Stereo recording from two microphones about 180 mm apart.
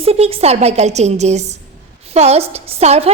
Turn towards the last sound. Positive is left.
turn(degrees=-35)  # may be behind; listen again after turning